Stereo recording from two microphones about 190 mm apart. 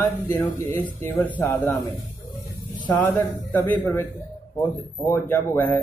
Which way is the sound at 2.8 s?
10° left (ahead or behind).